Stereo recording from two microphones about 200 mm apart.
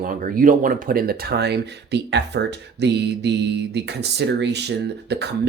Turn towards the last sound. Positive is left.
turn(degrees=-60)  # may be behind; listen again after turning